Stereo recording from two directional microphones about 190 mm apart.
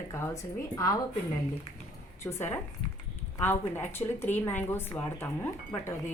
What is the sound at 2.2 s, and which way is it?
A woman's voice, 10° left (ahead or behind).